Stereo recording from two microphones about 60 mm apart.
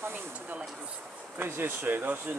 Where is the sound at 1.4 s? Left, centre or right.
Right.